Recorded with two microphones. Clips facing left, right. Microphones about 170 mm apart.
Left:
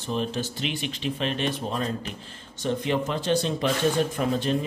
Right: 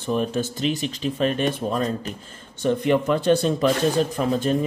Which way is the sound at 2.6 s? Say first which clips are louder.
Right 6 dB; 55° right (ahead or behind).